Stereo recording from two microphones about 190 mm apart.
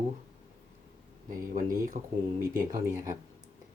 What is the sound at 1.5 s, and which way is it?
Speech, 45° right (ahead or behind).